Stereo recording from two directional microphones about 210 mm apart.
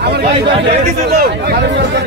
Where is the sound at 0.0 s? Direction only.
50° right (ahead or behind).